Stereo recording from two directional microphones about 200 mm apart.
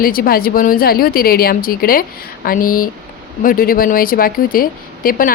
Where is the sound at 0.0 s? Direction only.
45° left (ahead or behind).